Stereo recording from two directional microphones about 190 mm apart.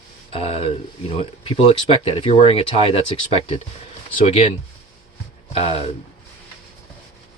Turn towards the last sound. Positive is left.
turn(degrees=30)  # may be behind; listen again after turning